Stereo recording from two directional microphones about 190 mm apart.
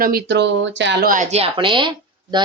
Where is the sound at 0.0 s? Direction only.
55° right (ahead or behind).